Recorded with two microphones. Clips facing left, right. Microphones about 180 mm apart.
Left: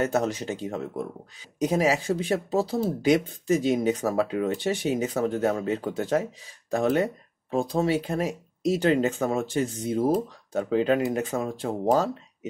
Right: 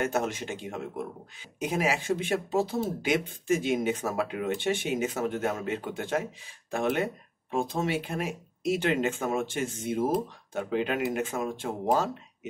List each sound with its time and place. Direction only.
0.0 s speech: 35° left (ahead or behind)